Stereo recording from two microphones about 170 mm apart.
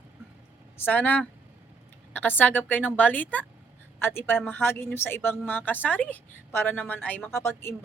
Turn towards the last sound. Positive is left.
turn(degrees=15)  # may be behind; listen again after turning